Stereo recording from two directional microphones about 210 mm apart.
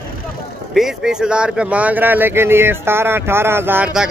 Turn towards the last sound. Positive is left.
turn(degrees=-5)  # may be behind; listen again after turning